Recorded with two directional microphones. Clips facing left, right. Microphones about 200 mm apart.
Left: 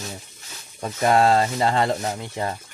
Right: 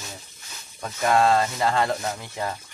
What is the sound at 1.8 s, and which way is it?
Speech, 20° left (ahead or behind).